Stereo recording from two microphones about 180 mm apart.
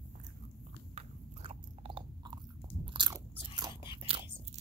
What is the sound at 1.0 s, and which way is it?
Biting, 30° right (ahead or behind).